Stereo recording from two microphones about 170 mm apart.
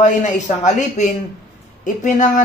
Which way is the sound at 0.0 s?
45° left (ahead or behind).